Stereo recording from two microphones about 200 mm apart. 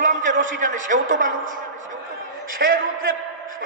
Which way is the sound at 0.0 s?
40° right (ahead or behind).